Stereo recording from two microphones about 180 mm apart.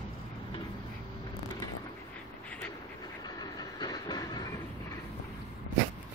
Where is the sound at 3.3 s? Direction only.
20° left (ahead or behind).